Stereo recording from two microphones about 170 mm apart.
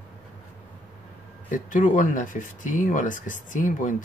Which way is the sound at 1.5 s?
50° left (ahead or behind).